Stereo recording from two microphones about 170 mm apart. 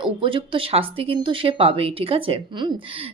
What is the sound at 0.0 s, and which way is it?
A woman's voice, 30° right (ahead or behind).